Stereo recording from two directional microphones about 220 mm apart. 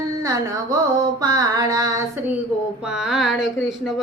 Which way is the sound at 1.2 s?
15° right (ahead or behind).